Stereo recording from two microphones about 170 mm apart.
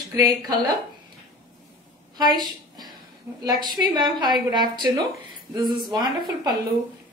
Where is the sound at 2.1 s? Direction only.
25° right (ahead or behind).